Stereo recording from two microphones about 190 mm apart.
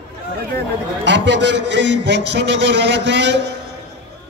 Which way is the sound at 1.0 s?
70° right (ahead or behind).